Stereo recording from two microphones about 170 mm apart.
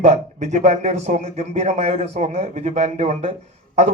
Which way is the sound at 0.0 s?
45° right (ahead or behind).